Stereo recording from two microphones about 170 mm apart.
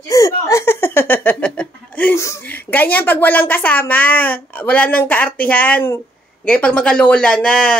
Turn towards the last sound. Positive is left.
turn(degrees=5)  # may be behind; listen again after turning